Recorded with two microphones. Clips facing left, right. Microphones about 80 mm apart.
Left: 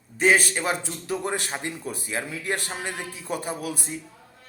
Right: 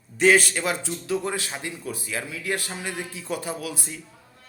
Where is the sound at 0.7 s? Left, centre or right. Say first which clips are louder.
Right 1 dB; left.